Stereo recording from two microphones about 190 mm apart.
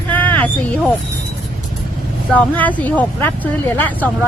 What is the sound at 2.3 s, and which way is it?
Speech, 10° left (ahead or behind).